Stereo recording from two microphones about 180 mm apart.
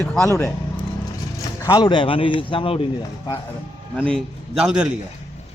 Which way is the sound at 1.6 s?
25° left (ahead or behind).